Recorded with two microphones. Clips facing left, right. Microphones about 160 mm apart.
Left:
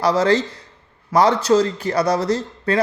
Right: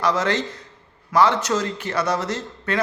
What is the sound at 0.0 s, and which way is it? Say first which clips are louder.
Speech: left 5 dB; 35° left (ahead or behind).